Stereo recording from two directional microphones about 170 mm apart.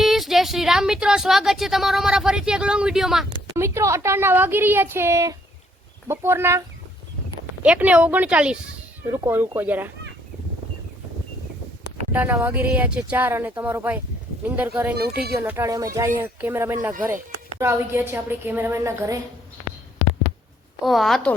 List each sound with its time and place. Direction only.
0.0 s speech: centre (ahead or behind)
3.6 s speech: 15° right (ahead or behind)
7.6 s speech: 5° right (ahead or behind)
12.1 s speech: 10° right (ahead or behind)
14.9 s speech: 65° right (ahead or behind)
15.4 s speech: 15° right (ahead or behind)
20.8 s speech: centre (ahead or behind)